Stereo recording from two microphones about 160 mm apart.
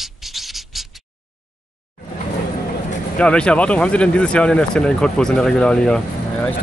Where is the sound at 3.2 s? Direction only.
5° left (ahead or behind).